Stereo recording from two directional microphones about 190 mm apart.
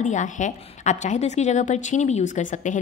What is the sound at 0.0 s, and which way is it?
A woman's voice, 40° left (ahead or behind).